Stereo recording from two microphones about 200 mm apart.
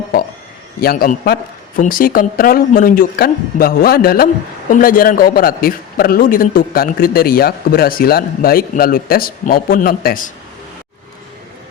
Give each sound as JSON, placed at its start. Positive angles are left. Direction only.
{"t": 0.8, "sound": "a man's voice", "side_deg": 50}